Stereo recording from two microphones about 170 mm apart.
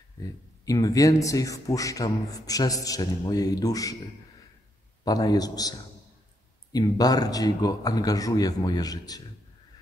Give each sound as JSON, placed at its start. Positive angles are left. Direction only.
{"t": 0.7, "sound": "a man's voice", "side_deg": 20}
{"t": 5.0, "sound": "a man's voice", "side_deg": 20}